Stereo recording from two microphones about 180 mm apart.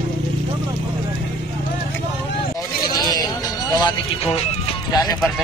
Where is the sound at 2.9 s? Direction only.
20° left (ahead or behind).